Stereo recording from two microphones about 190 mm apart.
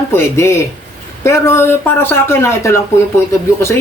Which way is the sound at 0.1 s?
15° left (ahead or behind).